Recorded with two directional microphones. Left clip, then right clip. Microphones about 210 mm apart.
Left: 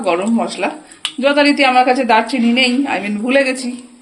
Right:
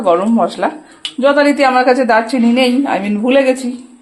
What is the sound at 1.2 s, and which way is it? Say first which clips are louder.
A woman's voice: right 2 dB; 10° right (ahead or behind).